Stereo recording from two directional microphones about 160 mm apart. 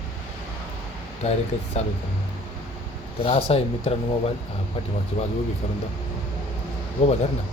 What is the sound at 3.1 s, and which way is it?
Speech, 35° left (ahead or behind).